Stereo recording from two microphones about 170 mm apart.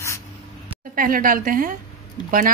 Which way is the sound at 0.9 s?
55° right (ahead or behind).